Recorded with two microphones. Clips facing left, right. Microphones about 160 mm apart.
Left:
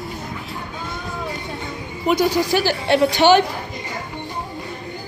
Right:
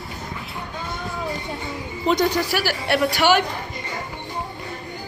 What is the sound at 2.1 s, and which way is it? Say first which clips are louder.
Speech: left 2 dB; 5° left (ahead or behind).